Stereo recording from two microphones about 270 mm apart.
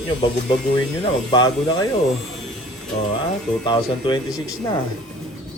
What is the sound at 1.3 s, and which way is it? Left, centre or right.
Speech, centre.